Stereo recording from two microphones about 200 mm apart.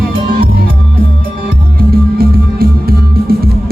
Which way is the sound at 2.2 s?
50° right (ahead or behind).